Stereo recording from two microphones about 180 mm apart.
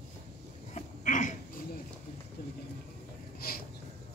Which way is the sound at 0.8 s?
45° left (ahead or behind).